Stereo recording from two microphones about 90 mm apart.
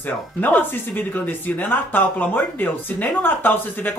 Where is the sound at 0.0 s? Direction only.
20° left (ahead or behind).